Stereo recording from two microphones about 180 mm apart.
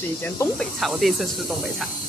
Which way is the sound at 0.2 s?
10° left (ahead or behind).